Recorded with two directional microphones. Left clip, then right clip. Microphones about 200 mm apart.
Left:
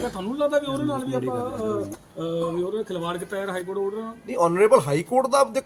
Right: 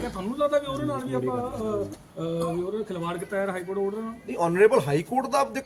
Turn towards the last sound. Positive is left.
turn(degrees=20)  # may be behind; listen again after turning